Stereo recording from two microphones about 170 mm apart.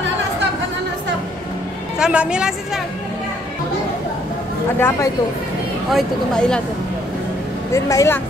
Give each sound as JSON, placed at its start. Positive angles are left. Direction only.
{"t": 2.0, "sound": "a woman's voice", "side_deg": -5}
{"t": 4.7, "sound": "speech", "side_deg": 15}
{"t": 5.9, "sound": "a woman's voice", "side_deg": 0}
{"t": 7.7, "sound": "speech", "side_deg": 15}